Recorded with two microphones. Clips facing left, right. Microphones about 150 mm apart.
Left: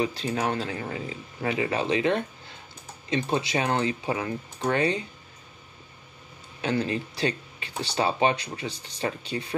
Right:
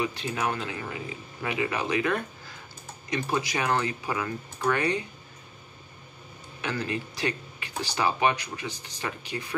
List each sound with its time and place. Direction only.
0.0 s speech: 35° left (ahead or behind)
6.6 s speech: 30° left (ahead or behind)